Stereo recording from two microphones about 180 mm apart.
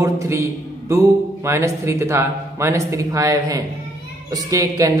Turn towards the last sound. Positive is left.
turn(degrees=-20)  # may be behind; listen again after turning